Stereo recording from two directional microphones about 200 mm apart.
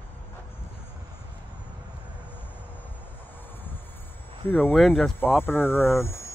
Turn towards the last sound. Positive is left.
turn(degrees=15)  # may be behind; listen again after turning